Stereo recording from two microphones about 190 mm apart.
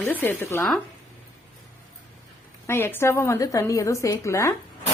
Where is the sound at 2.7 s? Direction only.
10° left (ahead or behind).